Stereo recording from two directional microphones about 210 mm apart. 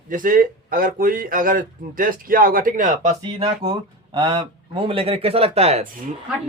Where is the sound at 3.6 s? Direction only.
20° right (ahead or behind).